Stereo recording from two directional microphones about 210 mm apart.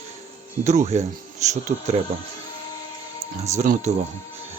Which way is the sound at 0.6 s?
35° right (ahead or behind).